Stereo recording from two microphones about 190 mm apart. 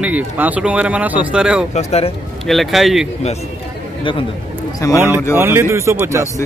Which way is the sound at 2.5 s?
Centre (ahead or behind).